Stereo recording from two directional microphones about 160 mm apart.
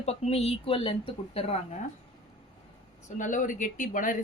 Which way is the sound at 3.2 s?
55° left (ahead or behind).